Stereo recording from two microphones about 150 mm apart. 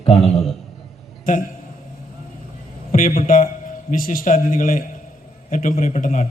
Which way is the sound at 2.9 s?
65° left (ahead or behind).